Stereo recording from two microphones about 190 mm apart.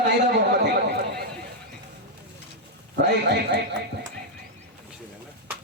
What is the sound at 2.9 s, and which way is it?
Speech, 60° right (ahead or behind).